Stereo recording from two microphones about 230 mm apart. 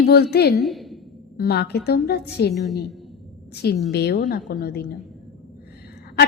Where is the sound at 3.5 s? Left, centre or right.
Left.